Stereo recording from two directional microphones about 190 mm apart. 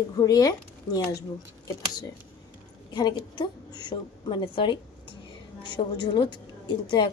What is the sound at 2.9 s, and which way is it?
A woman's voice, 20° left (ahead or behind).